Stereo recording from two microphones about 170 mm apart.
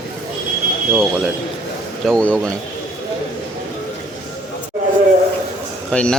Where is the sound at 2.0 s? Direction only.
5° left (ahead or behind).